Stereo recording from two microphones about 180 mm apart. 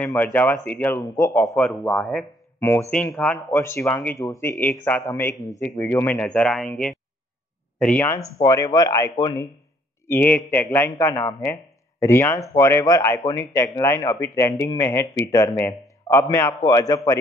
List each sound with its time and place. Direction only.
0.0 s a man's voice: 10° left (ahead or behind)
1.6 s a man's voice: 5° left (ahead or behind); by 9.3 s 20° left (ahead or behind)
10.0 s a man's voice: 10° left (ahead or behind)